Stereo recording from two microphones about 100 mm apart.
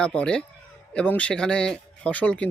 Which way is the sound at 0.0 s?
10° left (ahead or behind).